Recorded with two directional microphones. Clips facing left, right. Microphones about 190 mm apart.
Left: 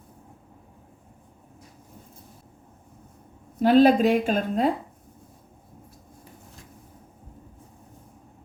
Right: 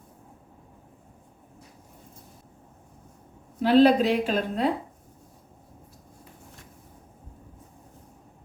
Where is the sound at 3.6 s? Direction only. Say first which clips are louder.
Left 1 dB; 45° left (ahead or behind).